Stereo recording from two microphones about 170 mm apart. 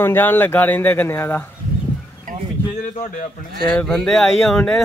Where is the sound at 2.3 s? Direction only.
50° right (ahead or behind).